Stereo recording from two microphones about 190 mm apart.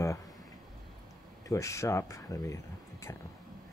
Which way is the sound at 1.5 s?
15° left (ahead or behind).